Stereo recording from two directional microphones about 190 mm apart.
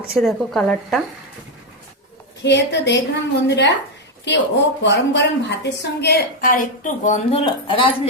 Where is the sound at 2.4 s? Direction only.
65° left (ahead or behind).